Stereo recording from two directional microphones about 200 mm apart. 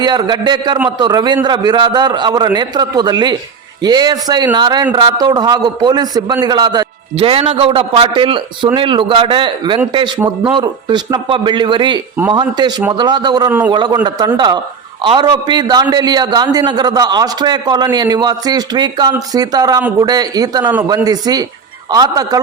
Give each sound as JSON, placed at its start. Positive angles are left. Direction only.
{"t": 0.0, "sound": "a man's voice", "side_deg": -20}